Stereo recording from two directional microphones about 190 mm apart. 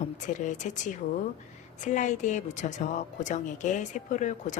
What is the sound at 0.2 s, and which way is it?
A woman's voice, 40° left (ahead or behind).